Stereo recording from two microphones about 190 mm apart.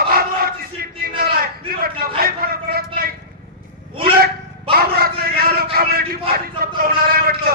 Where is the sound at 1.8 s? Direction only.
50° right (ahead or behind).